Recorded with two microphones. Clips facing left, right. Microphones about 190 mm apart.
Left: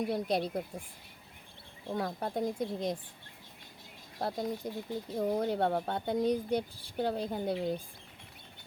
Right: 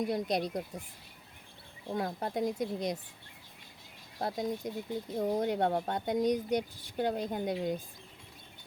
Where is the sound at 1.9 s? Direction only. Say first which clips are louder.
Even; 5° right (ahead or behind).